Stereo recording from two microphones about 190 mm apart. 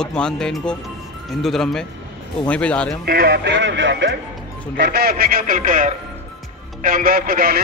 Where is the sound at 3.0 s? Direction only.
55° right (ahead or behind); by 4.1 s 70° right (ahead or behind).